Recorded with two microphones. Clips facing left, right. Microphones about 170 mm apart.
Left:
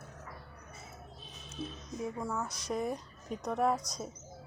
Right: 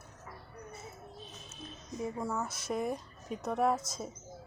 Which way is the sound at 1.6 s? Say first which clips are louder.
Left 8 dB; 75° left (ahead or behind).